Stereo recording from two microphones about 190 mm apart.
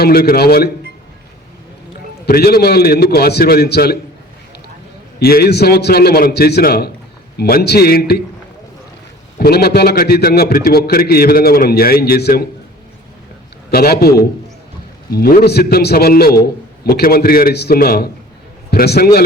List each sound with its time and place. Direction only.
0.0 s a man's voice: 55° left (ahead or behind)
2.2 s a man's voice: 55° left (ahead or behind)
5.2 s a man's voice: 55° left (ahead or behind)
9.4 s a man's voice: 55° left (ahead or behind)
13.7 s a man's voice: 55° left (ahead or behind)